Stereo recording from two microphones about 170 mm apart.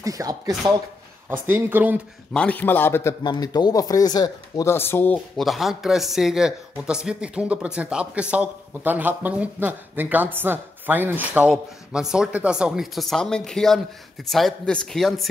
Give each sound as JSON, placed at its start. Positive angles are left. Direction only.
{"t": 0.0, "sound": "speech", "side_deg": -20}
{"t": 1.3, "sound": "speech", "side_deg": -10}
{"t": 2.3, "sound": "a man's voice", "side_deg": 10}
{"t": 5.4, "sound": "speech", "side_deg": 0}